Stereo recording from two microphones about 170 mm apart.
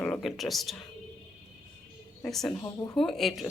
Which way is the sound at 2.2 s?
5° left (ahead or behind).